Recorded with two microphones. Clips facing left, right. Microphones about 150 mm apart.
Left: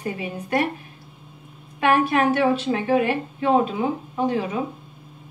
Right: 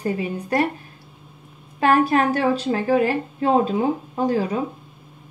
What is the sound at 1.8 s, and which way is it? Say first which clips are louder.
A woman's voice: right 2 dB; 40° right (ahead or behind).